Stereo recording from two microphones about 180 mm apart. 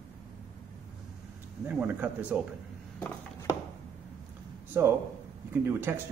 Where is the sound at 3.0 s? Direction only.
15° left (ahead or behind).